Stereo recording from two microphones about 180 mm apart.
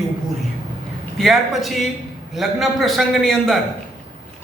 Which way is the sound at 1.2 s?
Centre (ahead or behind).